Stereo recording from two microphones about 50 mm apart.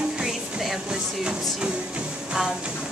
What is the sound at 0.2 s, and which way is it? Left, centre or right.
Music, centre.